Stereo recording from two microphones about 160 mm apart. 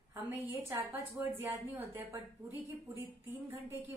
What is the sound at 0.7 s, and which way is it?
A woman's voice, 15° right (ahead or behind).